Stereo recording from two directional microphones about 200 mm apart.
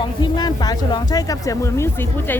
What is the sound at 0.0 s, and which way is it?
Speech, 20° left (ahead or behind).